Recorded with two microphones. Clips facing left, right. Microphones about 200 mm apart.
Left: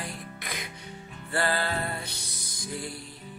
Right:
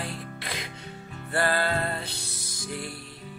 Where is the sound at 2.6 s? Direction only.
60° right (ahead or behind).